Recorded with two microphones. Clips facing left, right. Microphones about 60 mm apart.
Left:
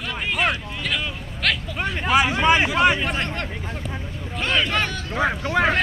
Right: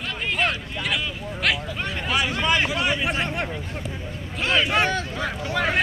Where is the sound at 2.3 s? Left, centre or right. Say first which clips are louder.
Left 4 dB; left.